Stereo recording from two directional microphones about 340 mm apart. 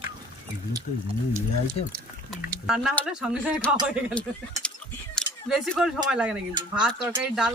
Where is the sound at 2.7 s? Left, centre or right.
Centre.